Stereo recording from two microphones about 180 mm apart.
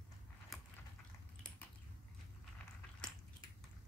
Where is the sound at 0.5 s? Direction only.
Centre (ahead or behind).